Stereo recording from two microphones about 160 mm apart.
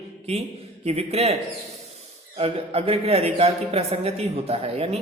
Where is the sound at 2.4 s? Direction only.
35° right (ahead or behind).